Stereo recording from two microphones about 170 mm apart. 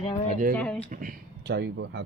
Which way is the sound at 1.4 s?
80° right.